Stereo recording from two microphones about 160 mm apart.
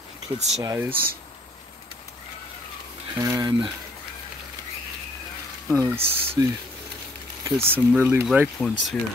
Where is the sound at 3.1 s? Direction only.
20° right (ahead or behind).